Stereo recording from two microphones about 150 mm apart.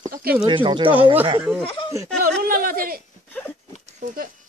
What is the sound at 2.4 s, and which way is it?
Speech, 75° right (ahead or behind).